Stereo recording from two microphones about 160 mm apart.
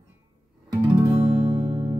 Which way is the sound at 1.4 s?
40° right (ahead or behind).